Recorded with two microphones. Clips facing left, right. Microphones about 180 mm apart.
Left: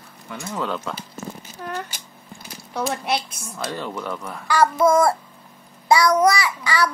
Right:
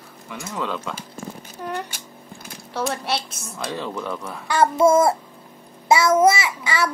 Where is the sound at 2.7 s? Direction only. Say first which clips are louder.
Even; centre (ahead or behind).